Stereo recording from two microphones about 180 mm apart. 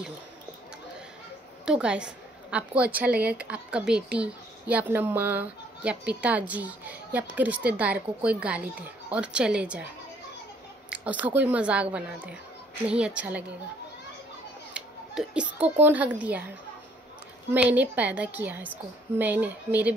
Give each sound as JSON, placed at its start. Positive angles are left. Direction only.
{"t": 1.7, "sound": "a woman's voice", "side_deg": -5}
{"t": 10.9, "sound": "a woman's voice", "side_deg": -10}
{"t": 14.7, "sound": "a sound", "side_deg": -5}
{"t": 15.8, "sound": "a woman's voice", "side_deg": -10}